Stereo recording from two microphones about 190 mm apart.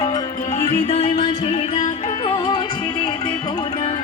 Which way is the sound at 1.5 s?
40° left (ahead or behind).